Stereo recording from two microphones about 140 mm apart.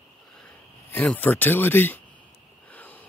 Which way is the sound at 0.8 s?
10° left (ahead or behind).